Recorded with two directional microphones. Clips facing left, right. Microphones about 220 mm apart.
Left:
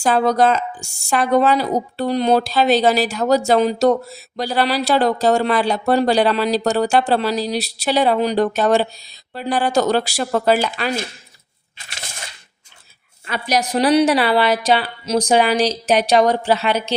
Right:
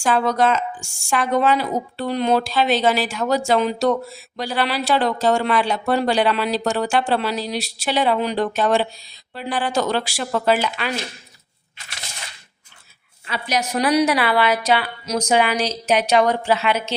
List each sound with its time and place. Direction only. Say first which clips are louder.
0.0 s a woman's voice: left 3 dB; 40° left (ahead or behind)
13.2 s a woman's voice: left 4 dB; 50° left (ahead or behind)
13.6 s a woman's voice: left 3 dB; 30° left (ahead or behind)